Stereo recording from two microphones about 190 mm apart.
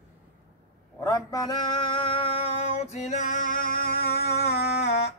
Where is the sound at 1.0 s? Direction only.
20° left (ahead or behind).